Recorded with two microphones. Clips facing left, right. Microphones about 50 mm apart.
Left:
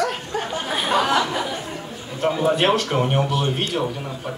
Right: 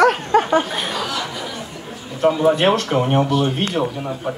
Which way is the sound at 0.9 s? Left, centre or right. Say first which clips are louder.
Left 6 dB; left.